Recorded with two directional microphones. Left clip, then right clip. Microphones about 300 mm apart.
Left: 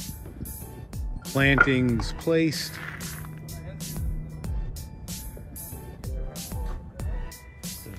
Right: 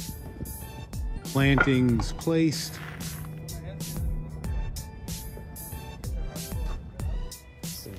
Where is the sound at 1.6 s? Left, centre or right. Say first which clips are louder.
Even; centre.